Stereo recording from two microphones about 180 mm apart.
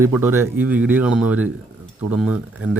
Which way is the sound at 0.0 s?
10° right (ahead or behind).